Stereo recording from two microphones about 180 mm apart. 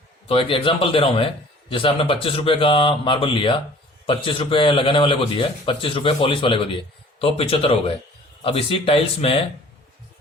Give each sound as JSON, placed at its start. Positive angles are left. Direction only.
{"t": 0.3, "sound": "a man's voice", "side_deg": 30}